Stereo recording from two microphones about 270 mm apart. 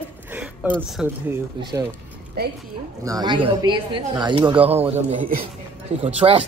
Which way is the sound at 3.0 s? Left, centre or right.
Centre.